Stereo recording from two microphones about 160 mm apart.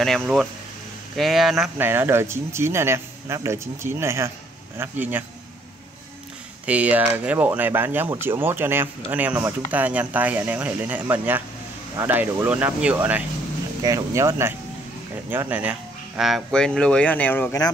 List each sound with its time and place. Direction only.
0.0 s speech: centre (ahead or behind)
1.8 s speech: 15° right (ahead or behind)
6.6 s speech: 10° right (ahead or behind); by 17.6 s 10° left (ahead or behind)